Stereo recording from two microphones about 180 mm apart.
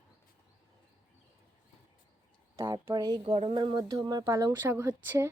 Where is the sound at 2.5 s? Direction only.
15° right (ahead or behind).